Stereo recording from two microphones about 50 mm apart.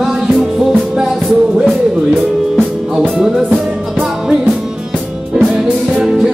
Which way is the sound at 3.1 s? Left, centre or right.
Centre.